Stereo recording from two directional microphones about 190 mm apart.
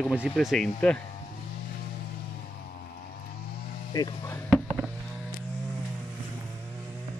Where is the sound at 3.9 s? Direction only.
15° left (ahead or behind).